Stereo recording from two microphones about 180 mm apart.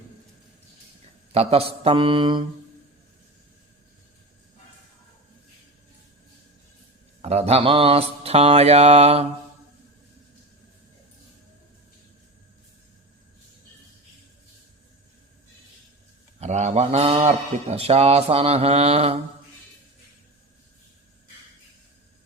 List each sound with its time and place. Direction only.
1.3 s a man's voice: 35° right (ahead or behind)
7.2 s a man's voice: 35° right (ahead or behind)
16.4 s a man's voice: 40° right (ahead or behind)